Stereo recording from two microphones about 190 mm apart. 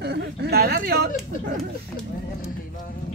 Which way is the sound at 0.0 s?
60° right (ahead or behind).